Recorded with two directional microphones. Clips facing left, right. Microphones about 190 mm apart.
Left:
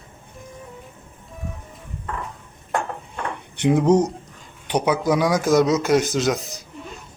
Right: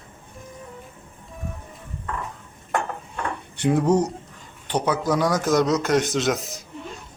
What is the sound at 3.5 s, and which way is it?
A man's voice, 20° left (ahead or behind).